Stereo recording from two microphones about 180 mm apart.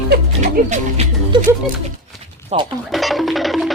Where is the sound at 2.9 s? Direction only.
Centre (ahead or behind).